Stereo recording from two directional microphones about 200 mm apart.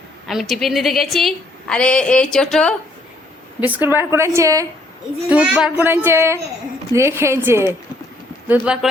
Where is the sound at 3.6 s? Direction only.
10° right (ahead or behind).